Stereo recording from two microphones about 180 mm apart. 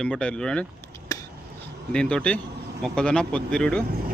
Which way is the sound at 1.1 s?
20° left (ahead or behind).